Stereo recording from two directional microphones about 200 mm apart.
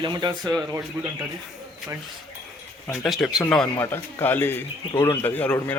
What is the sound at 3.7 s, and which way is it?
Speech, 15° left (ahead or behind).